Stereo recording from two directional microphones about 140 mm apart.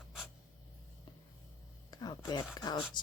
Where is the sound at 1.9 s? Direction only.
30° left (ahead or behind).